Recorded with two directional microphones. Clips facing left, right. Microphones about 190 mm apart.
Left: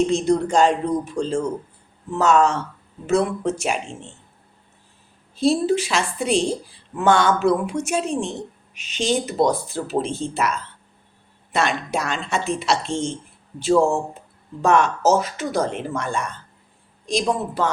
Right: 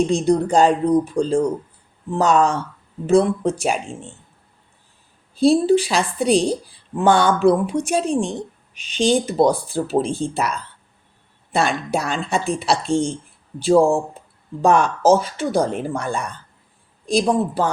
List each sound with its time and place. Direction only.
0.3 s speech: 35° right (ahead or behind)
5.4 s speech: 30° right (ahead or behind)
11.5 s speech: 35° right (ahead or behind)
17.1 s speech: 35° right (ahead or behind)